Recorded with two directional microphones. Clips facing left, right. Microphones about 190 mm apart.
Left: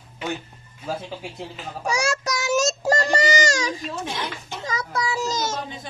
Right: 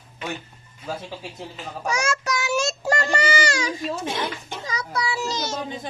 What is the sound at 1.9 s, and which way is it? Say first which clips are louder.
Child singing: left 1 dB; 35° left (ahead or behind).